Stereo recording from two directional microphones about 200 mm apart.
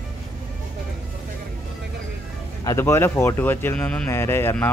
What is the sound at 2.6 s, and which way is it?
Speech, 15° left (ahead or behind).